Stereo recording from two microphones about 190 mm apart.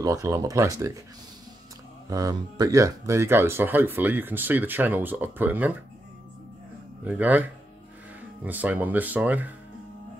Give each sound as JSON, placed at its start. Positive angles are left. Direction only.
{"t": 0.0, "sound": "speech", "side_deg": -15}
{"t": 2.0, "sound": "speech", "side_deg": -20}
{"t": 7.1, "sound": "speech", "side_deg": -10}
{"t": 8.5, "sound": "speech", "side_deg": -10}